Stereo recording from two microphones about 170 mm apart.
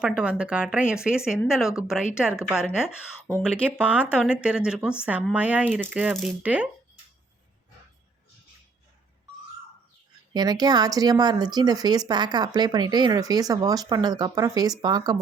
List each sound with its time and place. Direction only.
0.2 s speech: 5° right (ahead or behind)
3.7 s speech: 5° right (ahead or behind)
10.3 s speech: 25° right (ahead or behind)